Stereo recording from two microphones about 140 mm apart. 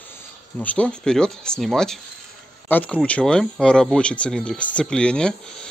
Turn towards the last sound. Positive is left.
turn(degrees=5)  # may be behind; listen again after turning